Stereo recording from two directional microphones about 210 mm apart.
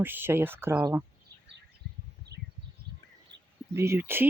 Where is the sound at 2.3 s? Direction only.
50° right (ahead or behind).